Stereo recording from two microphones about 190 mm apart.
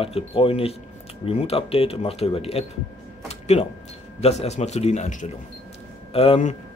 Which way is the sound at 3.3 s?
35° left (ahead or behind).